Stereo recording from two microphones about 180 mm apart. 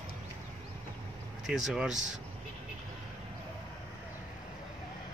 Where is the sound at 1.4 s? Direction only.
Centre (ahead or behind).